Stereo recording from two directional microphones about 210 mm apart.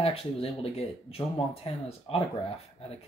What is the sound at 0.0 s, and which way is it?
Speech, 30° left (ahead or behind).